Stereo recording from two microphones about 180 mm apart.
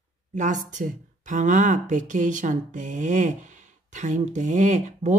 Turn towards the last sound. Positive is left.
turn(degrees=-40)  # may be behind; listen again after turning